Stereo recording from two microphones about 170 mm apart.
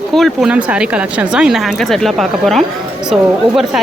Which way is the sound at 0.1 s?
Centre (ahead or behind).